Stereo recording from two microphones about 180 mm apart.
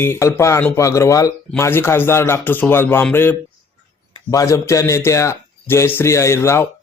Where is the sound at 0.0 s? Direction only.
15° left (ahead or behind).